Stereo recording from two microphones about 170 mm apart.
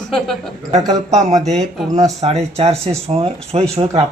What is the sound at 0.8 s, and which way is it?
Speech, 20° right (ahead or behind).